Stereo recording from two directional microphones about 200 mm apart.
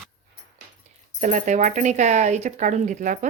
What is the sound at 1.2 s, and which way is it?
Speech, 40° right (ahead or behind).